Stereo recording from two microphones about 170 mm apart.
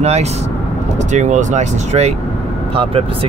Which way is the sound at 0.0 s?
40° right (ahead or behind).